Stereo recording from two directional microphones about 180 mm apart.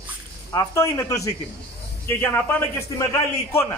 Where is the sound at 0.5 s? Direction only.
20° left (ahead or behind).